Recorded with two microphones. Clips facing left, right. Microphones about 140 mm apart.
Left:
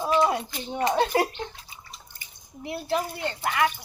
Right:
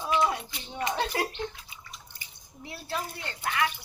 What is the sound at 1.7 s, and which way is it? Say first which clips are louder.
Drip: left 1 dB; 40° left (ahead or behind).